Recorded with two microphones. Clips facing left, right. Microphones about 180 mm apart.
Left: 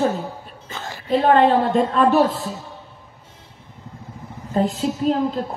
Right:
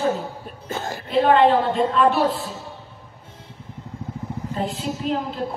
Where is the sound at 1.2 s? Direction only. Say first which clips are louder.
Even; 45° left (ahead or behind).